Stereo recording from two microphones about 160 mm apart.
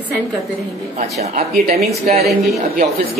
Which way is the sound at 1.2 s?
45° right (ahead or behind).